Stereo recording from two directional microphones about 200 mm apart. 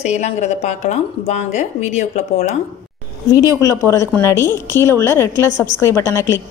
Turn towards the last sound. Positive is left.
turn(degrees=15)  # may be behind; listen again after turning